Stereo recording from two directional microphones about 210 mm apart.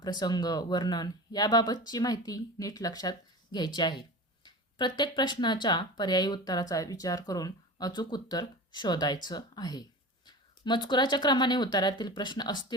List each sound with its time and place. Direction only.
0.0 s speech: 20° left (ahead or behind)